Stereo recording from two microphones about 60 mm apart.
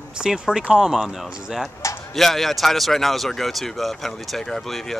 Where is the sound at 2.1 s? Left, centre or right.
Centre.